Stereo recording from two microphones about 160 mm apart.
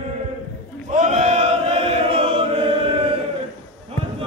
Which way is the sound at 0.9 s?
45° right (ahead or behind).